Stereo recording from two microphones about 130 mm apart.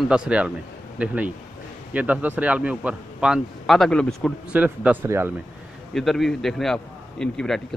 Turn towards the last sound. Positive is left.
turn(degrees=5)  # may be behind; listen again after turning